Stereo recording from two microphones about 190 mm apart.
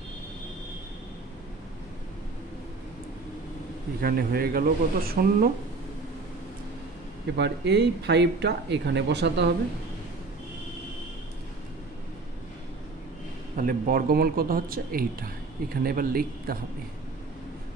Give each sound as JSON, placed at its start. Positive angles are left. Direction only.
{"t": 4.0, "sound": "speech", "side_deg": -50}
{"t": 7.3, "sound": "speech", "side_deg": -65}
{"t": 13.6, "sound": "speech", "side_deg": -50}